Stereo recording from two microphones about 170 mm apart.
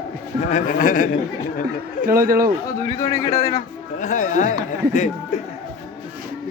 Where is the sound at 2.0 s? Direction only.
55° right (ahead or behind).